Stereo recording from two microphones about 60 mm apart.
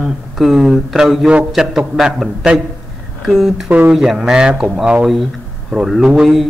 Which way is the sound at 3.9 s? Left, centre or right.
Centre.